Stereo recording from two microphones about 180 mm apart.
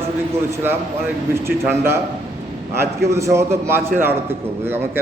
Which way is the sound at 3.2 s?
15° right (ahead or behind).